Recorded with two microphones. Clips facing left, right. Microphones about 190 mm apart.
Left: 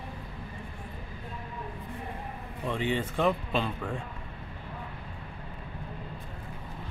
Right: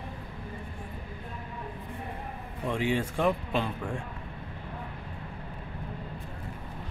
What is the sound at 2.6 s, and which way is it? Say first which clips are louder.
Speech: right 1 dB; 10° right (ahead or behind).